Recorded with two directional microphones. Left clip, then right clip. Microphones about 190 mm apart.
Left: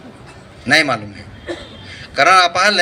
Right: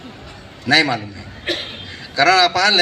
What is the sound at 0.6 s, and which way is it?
A man's voice, 30° left (ahead or behind).